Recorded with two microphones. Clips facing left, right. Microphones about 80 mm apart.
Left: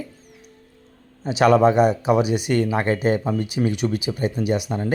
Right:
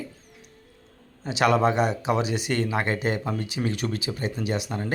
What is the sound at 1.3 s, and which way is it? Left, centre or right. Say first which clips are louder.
Speech: left 6 dB; left.